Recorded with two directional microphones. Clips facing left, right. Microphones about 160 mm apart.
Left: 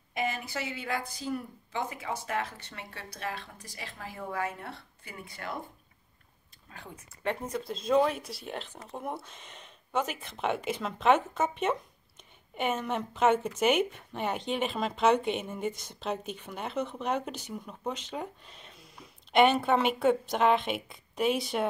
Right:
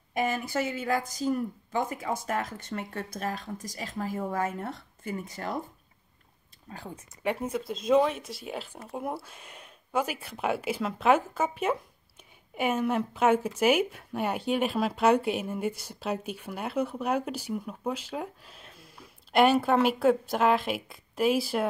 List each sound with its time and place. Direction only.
0.1 s speech: 45° right (ahead or behind)
6.7 s a woman's voice: 35° right (ahead or behind)
7.2 s speech: 5° right (ahead or behind)